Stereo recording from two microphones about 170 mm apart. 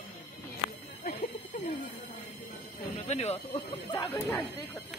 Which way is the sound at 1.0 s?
60° left (ahead or behind).